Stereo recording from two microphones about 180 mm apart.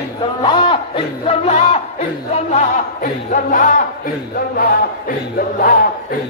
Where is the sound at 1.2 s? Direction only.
35° left (ahead or behind).